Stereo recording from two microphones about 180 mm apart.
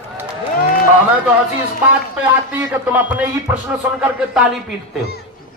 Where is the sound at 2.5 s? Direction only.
10° right (ahead or behind).